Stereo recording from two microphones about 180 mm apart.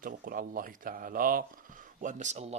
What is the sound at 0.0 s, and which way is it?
Speech, 50° right (ahead or behind).